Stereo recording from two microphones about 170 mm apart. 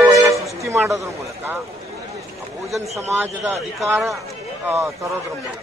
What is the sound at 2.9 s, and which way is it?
A man's voice, 15° right (ahead or behind).